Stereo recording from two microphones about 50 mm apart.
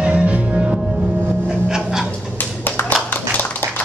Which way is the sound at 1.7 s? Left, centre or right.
Centre.